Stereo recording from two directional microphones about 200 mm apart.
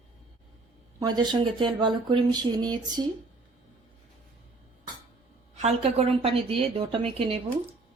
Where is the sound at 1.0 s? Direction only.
20° right (ahead or behind).